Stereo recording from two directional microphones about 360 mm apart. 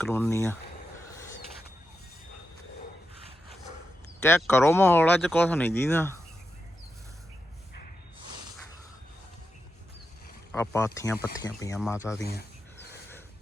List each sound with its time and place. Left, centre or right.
0.0 s speech: centre
1.1 s a sound: centre
4.2 s speech: centre
10.5 s speech: centre
12.2 s speech: left